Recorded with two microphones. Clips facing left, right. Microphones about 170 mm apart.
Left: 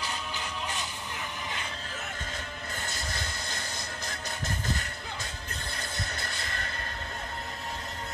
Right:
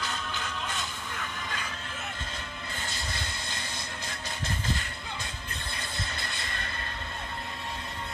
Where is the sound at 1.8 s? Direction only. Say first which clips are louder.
Even; 40° left (ahead or behind).